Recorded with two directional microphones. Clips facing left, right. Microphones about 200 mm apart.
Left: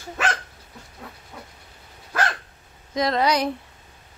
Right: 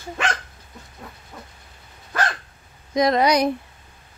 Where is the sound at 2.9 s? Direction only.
15° right (ahead or behind).